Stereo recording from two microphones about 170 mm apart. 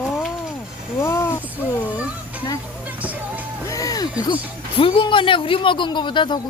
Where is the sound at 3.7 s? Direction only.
20° left (ahead or behind).